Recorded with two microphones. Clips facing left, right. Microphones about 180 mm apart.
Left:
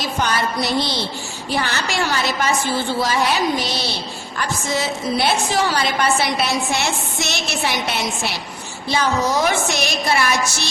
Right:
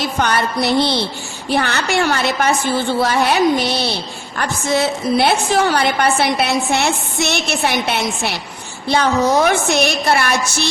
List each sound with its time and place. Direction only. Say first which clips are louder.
0.0 s a woman's voice: right 3 dB; 60° right (ahead or behind)